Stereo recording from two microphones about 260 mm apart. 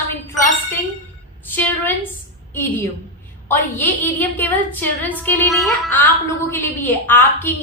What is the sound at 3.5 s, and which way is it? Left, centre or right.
A woman's voice, centre.